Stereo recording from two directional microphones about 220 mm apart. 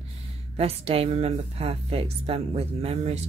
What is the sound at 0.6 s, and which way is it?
A woman's voice, 25° right (ahead or behind).